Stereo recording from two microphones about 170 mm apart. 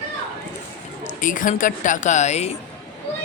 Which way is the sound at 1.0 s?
50° left (ahead or behind).